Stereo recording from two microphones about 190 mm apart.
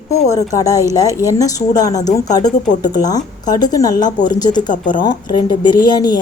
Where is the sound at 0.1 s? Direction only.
15° left (ahead or behind).